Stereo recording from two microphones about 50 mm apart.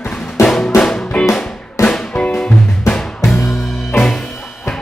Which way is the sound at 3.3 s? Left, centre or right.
Centre.